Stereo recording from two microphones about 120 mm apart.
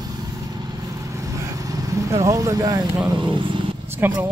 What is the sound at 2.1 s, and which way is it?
Speech, 25° right (ahead or behind).